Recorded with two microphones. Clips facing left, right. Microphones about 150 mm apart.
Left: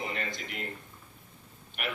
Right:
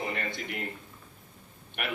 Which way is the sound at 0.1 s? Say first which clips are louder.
Right 2 dB; 60° right (ahead or behind).